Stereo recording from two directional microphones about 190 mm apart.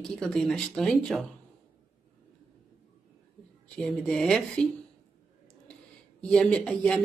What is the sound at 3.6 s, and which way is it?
A woman's voice, 5° left (ahead or behind).